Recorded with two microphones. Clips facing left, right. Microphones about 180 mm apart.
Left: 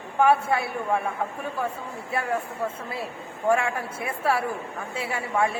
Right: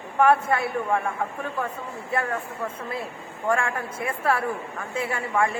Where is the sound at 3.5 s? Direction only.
10° left (ahead or behind).